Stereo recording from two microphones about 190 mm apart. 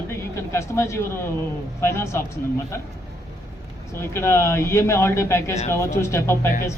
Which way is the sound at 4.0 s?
15° left (ahead or behind).